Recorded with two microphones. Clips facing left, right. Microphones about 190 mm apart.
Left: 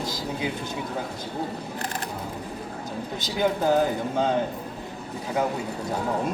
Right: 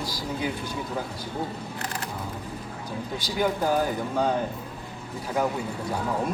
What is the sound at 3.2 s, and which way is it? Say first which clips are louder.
Speech: left 2 dB; 20° left (ahead or behind).